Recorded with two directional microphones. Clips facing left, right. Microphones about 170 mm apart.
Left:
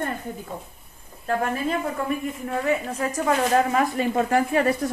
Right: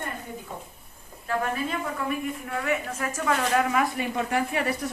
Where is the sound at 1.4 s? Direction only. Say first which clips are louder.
Left 3 dB; 40° left (ahead or behind).